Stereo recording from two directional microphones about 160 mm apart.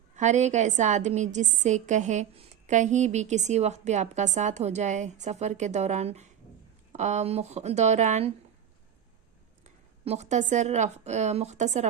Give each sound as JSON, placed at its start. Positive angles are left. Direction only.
{"t": 0.2, "sound": "a woman's voice", "side_deg": -50}
{"t": 9.6, "sound": "a woman's voice", "side_deg": -45}